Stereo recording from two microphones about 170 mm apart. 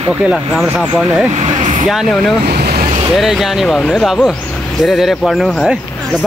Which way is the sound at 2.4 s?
65° right (ahead or behind).